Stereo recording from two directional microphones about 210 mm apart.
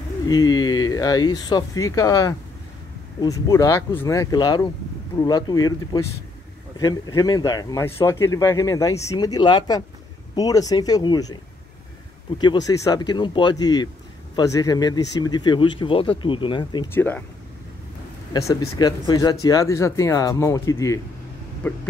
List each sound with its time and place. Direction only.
0.3 s speech: 20° left (ahead or behind)
12.4 s speech: 20° left (ahead or behind)
16.9 s speech: 10° left (ahead or behind)
18.3 s speech: 20° left (ahead or behind)